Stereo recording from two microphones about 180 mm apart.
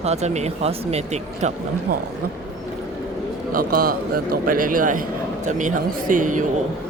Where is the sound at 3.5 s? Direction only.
55° right (ahead or behind).